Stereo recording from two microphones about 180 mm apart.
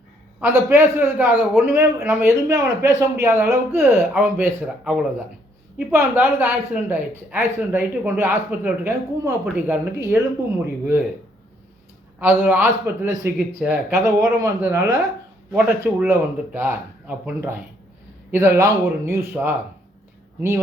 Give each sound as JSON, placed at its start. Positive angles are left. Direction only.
{"t": 0.3, "sound": "a man's voice", "side_deg": -10}
{"t": 12.2, "sound": "a man's voice", "side_deg": -10}